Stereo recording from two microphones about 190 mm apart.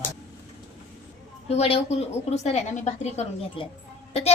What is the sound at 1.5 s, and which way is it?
A woman's voice, 30° left (ahead or behind).